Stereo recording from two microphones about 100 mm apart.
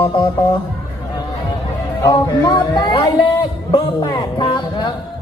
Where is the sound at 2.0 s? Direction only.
45° left (ahead or behind).